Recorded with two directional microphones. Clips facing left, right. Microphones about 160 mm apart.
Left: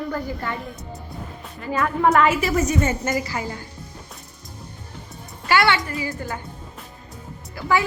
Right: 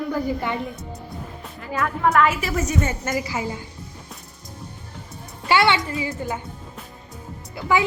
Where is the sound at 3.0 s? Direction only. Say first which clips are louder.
Left 1 dB; centre (ahead or behind).